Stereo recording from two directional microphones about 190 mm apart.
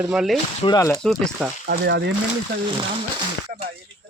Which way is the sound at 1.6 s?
60° right (ahead or behind).